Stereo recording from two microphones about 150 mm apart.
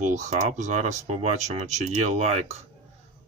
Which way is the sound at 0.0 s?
50° right (ahead or behind).